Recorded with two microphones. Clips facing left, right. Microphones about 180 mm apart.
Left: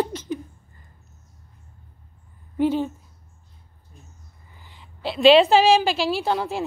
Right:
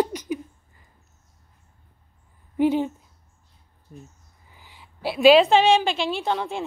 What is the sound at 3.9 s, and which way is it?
Speech, 55° right (ahead or behind).